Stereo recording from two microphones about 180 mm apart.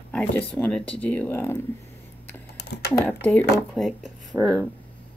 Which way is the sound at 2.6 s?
70° left (ahead or behind).